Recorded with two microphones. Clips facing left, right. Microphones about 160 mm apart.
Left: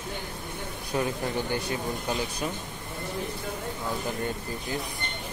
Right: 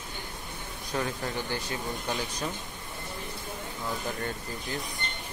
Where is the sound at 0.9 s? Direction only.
15° left (ahead or behind).